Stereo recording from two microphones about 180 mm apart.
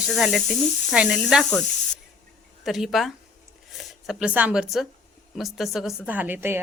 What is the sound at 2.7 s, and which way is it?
Speech, centre (ahead or behind).